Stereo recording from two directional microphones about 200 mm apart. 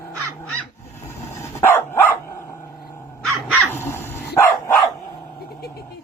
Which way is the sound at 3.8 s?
10° left (ahead or behind).